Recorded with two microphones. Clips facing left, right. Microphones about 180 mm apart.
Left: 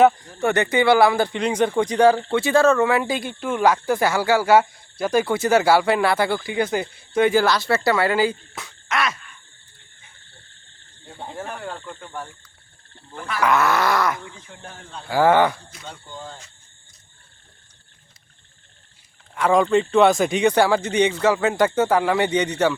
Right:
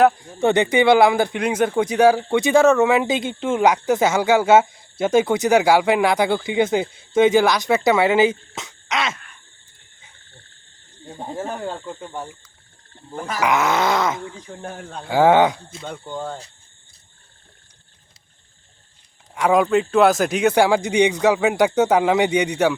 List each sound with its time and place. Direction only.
0.3 s speech: 15° right (ahead or behind)
11.3 s speech: 25° right (ahead or behind)
13.1 s speech: 40° right (ahead or behind)
13.4 s speech: 15° right (ahead or behind)
14.3 s speech: 40° right (ahead or behind)
15.1 s speech: 15° right (ahead or behind)
15.9 s speech: 55° right (ahead or behind)
19.3 s speech: 15° right (ahead or behind)